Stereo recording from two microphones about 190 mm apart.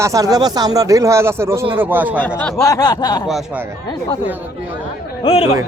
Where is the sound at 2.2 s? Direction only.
10° left (ahead or behind).